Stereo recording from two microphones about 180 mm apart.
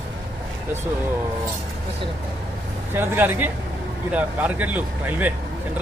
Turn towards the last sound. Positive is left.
turn(degrees=-10)  # may be behind; listen again after turning